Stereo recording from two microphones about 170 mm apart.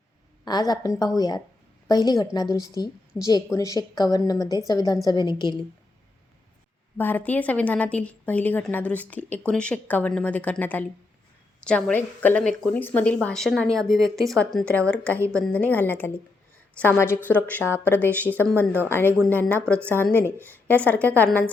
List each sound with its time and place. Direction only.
0.4 s a woman's voice: 25° left (ahead or behind)
6.9 s a woman's voice: 10° left (ahead or behind)
15.1 s a woman's voice: 15° right (ahead or behind)
15.4 s a woman's voice: 10° left (ahead or behind)